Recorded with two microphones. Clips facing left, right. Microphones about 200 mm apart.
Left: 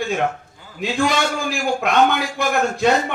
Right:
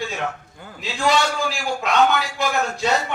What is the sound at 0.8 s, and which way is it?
A man's voice, 55° left (ahead or behind).